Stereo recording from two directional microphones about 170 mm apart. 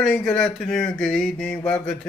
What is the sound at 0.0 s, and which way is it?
Speech, centre (ahead or behind).